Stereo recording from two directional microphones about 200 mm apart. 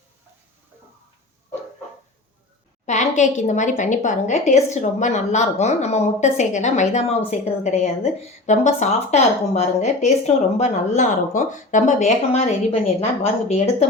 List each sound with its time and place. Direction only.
2.8 s a woman's voice: 35° left (ahead or behind)